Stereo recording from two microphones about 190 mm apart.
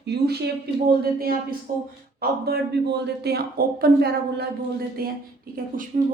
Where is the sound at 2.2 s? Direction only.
55° right (ahead or behind).